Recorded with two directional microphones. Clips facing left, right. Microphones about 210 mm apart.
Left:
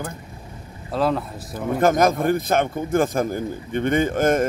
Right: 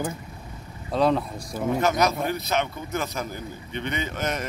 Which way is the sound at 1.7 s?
50° left (ahead or behind).